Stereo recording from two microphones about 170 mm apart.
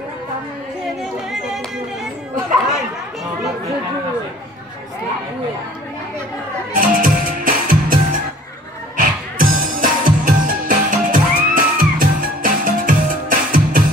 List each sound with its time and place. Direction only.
6.8 s music: 50° right (ahead or behind)